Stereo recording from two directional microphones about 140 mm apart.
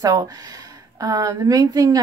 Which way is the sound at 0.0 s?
25° right (ahead or behind).